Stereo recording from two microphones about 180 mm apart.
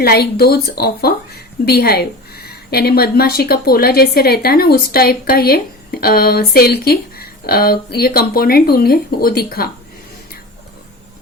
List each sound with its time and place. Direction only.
0.0 s speech: 60° left (ahead or behind)